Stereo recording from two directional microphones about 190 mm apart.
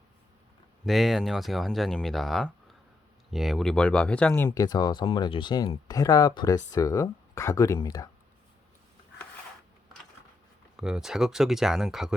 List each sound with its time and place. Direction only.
0.9 s speech: centre (ahead or behind)
4.4 s speech: 20° left (ahead or behind)
10.8 s speech: 5° right (ahead or behind)